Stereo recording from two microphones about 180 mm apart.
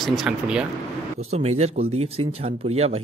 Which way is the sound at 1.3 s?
35° right (ahead or behind).